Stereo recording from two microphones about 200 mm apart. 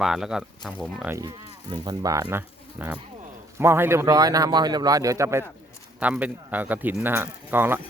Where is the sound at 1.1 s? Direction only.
20° right (ahead or behind).